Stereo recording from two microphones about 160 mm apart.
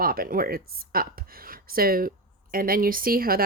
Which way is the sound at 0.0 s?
65° right (ahead or behind).